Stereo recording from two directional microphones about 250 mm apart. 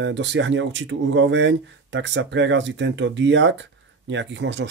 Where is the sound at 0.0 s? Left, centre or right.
Right.